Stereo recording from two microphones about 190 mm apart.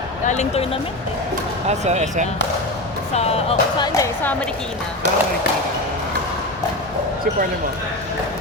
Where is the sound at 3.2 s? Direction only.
30° left (ahead or behind); by 4.5 s 10° left (ahead or behind).